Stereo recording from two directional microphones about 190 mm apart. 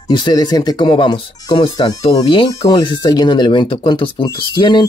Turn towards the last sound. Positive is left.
turn(degrees=25)  # may be behind; listen again after turning